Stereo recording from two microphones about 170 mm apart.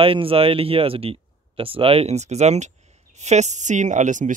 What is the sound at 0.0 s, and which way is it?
Speech, 35° right (ahead or behind).